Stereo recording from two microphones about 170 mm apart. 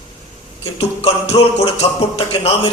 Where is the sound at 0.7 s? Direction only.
35° left (ahead or behind).